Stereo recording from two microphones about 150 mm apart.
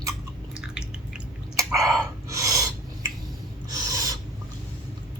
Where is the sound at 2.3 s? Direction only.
20° right (ahead or behind).